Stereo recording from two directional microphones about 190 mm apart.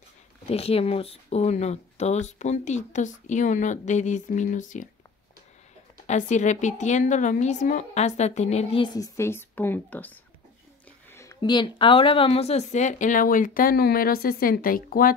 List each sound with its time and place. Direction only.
0.5 s speech: 30° left (ahead or behind)
6.0 s speech: 40° left (ahead or behind)